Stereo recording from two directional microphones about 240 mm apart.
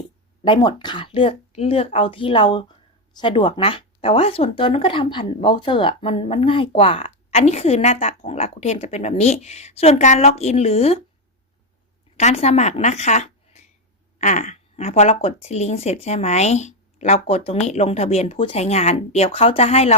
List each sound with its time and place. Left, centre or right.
0.4 s speech: centre
12.1 s speech: left